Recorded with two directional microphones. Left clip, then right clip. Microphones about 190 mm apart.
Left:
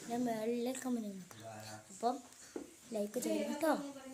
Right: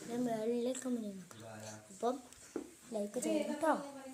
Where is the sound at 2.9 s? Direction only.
15° left (ahead or behind).